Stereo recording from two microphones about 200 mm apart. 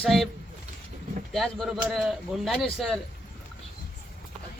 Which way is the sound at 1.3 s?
Centre (ahead or behind).